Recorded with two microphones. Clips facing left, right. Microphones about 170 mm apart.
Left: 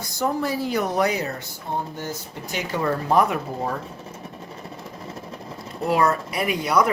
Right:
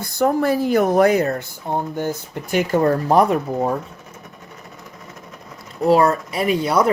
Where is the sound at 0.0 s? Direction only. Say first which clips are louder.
Right 6 dB; 55° right (ahead or behind); by 3.8 s 30° right (ahead or behind).